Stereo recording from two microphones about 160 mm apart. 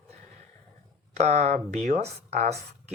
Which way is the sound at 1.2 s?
45° right (ahead or behind).